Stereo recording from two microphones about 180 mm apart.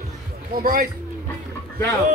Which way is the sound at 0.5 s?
55° right (ahead or behind).